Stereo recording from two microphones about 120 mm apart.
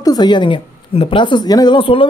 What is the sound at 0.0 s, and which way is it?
A woman's voice, 35° left (ahead or behind).